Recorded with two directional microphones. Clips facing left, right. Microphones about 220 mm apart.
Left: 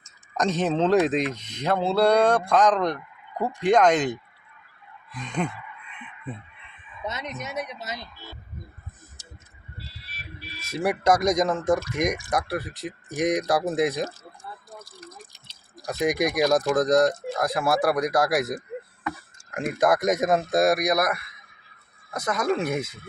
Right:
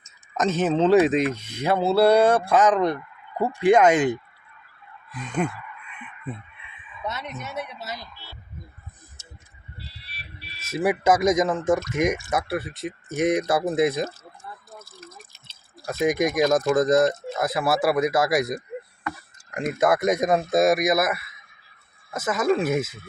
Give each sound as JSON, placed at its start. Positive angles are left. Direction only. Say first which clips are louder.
{"t": 0.3, "sound": "speech", "louder": "right 2 dB", "side_deg": 0}
{"t": 7.1, "sound": "speech", "louder": "left 1 dB", "side_deg": 20}
{"t": 8.1, "sound": "speech", "louder": "left 3 dB", "side_deg": 45}
{"t": 10.0, "sound": "music", "louder": "left 3 dB", "side_deg": 45}
{"t": 10.7, "sound": "speech", "louder": "right 1 dB", "side_deg": -5}
{"t": 14.8, "sound": "drip", "louder": "left 1 dB", "side_deg": 15}
{"t": 16.0, "sound": "speech", "louder": "right 2 dB", "side_deg": 0}
{"t": 16.4, "sound": "speech", "louder": "right 1 dB", "side_deg": 15}
{"t": 16.7, "sound": "speech", "louder": "right 1 dB", "side_deg": -5}